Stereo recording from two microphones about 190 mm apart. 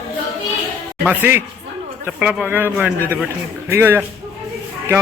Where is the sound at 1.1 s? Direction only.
10° right (ahead or behind).